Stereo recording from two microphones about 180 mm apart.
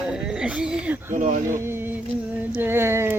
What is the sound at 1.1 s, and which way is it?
Speech, 45° right (ahead or behind).